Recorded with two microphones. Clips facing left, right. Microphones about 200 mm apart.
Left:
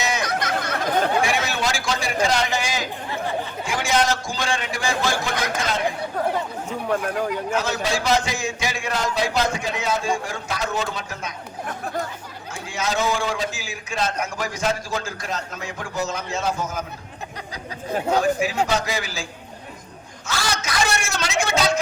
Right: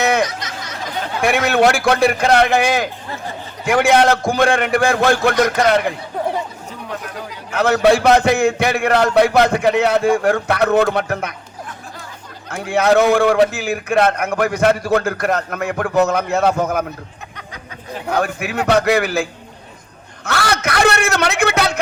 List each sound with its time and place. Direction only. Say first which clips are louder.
0.0 s a sound: right 9 dB; 60° right (ahead or behind)
0.3 s a sound: left 5 dB; 55° left (ahead or behind)
1.2 s a man's voice: right 9 dB; 60° right (ahead or behind)
7.5 s a man's voice: right 15 dB; 60° right (ahead or behind)
12.5 s a man's voice: right 12 dB; 60° right (ahead or behind)
18.2 s a man's voice: even; 60° right (ahead or behind)